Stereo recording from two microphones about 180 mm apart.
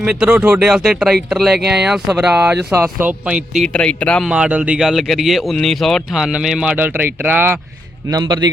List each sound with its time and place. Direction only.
0.0 s speech: 5° right (ahead or behind)
3.7 s speech: 5° left (ahead or behind)
4.3 s speech: 5° right (ahead or behind)
8.1 s a man's voice: 25° right (ahead or behind)